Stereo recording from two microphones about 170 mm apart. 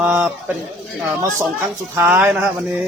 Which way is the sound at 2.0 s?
10° right (ahead or behind).